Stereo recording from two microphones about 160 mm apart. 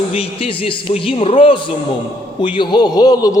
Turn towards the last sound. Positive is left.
turn(degrees=25)  # may be behind; listen again after turning